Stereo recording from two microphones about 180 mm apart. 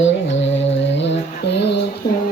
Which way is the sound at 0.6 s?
85° left.